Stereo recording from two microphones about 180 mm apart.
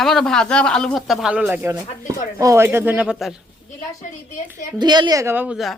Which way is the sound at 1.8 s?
45° left (ahead or behind).